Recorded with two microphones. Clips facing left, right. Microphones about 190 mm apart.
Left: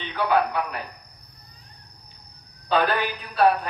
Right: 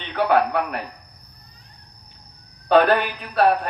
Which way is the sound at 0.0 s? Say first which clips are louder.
Right 3 dB; 60° right (ahead or behind).